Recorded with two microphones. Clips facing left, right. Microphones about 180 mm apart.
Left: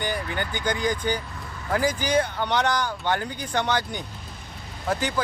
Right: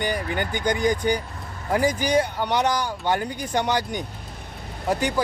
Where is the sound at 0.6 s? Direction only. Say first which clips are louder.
Right 4 dB; 15° right (ahead or behind).